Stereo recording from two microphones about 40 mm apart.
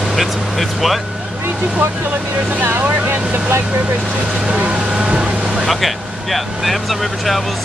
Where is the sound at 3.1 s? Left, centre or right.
Right.